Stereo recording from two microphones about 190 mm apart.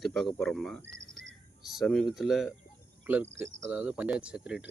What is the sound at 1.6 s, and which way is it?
Speech, centre (ahead or behind).